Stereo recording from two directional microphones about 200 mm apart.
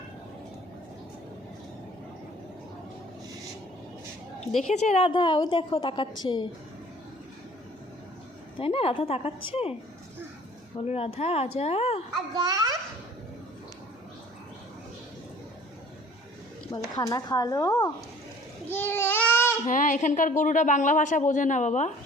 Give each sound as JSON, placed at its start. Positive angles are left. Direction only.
{"t": 4.7, "sound": "a woman's voice", "side_deg": 30}
{"t": 8.5, "sound": "a woman's voice", "side_deg": 30}
{"t": 10.8, "sound": "a woman's voice", "side_deg": 30}
{"t": 12.3, "sound": "a child's voice", "side_deg": -20}
{"t": 16.9, "sound": "a woman's voice", "side_deg": 20}
{"t": 18.7, "sound": "babbling", "side_deg": 10}
{"t": 19.6, "sound": "a woman's voice", "side_deg": 40}